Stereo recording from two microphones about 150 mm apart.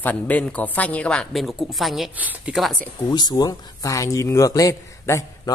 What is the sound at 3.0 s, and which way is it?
Speech, 25° left (ahead or behind).